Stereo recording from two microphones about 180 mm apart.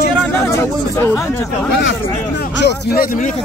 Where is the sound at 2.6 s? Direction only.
55° left (ahead or behind).